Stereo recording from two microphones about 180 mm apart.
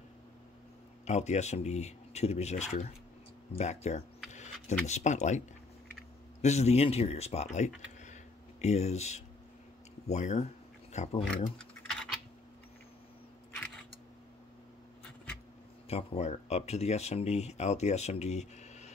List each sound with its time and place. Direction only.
1.0 s speech: 40° left (ahead or behind)
4.3 s a sound: 40° left (ahead or behind)
4.8 s speech: 40° left (ahead or behind)
6.4 s speech: 35° left (ahead or behind)
8.0 s a sound: 40° left (ahead or behind)
11.5 s typing: 5° left (ahead or behind)
15.9 s speech: 35° left (ahead or behind)